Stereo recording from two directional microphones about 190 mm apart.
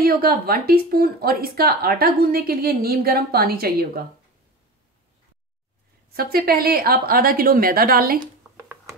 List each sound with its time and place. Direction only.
0.0 s speech: 50° right (ahead or behind)
6.1 s speech: 55° right (ahead or behind)
8.5 s a sound: centre (ahead or behind)